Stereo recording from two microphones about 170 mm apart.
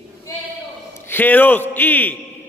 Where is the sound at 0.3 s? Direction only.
20° left (ahead or behind).